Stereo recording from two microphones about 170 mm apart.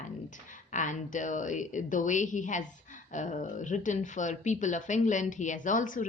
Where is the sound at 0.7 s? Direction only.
50° left (ahead or behind).